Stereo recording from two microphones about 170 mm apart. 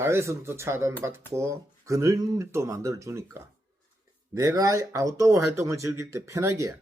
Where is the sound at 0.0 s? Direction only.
15° right (ahead or behind).